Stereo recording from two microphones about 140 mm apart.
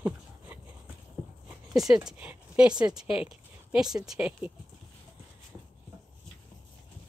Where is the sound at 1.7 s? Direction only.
Centre (ahead or behind).